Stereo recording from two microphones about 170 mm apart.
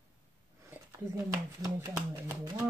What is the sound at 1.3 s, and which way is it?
Speech, 20° right (ahead or behind).